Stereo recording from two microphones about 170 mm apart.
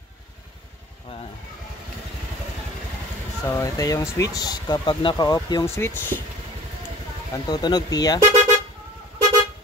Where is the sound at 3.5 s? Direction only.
20° left (ahead or behind).